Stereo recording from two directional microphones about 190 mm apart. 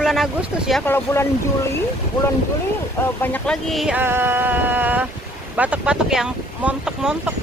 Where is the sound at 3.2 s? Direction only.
5° left (ahead or behind); by 5.0 s 10° right (ahead or behind).